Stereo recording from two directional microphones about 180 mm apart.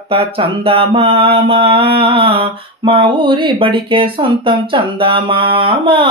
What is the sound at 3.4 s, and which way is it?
Speech, 30° right (ahead or behind).